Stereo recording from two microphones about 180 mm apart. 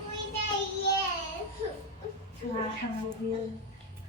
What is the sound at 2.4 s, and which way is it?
Speech, 40° left (ahead or behind).